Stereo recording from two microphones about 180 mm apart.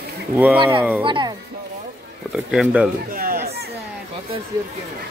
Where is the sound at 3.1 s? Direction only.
50° right (ahead or behind).